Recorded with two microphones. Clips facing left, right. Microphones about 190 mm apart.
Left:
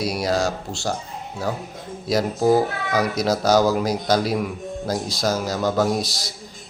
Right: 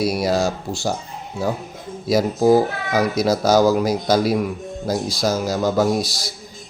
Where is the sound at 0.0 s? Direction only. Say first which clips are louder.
Right 3 dB; 5° right (ahead or behind).